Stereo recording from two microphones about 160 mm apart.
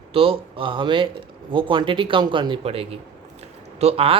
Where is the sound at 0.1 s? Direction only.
35° right (ahead or behind).